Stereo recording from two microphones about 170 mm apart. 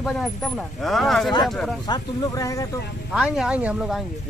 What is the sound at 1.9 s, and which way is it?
Speech, 20° left (ahead or behind).